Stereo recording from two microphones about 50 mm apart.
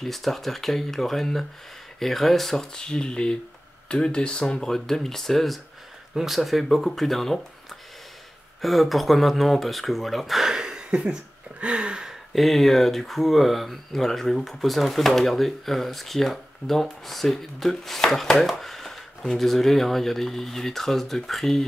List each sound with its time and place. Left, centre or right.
0.0 s speech: centre
8.5 s speech: centre
10.5 s a sound: centre
12.4 s speech: centre